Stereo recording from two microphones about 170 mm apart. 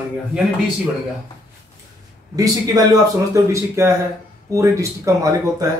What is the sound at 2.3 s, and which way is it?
Speech, 20° right (ahead or behind).